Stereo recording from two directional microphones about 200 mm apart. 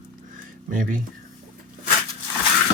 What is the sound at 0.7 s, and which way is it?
Speech, 45° right (ahead or behind).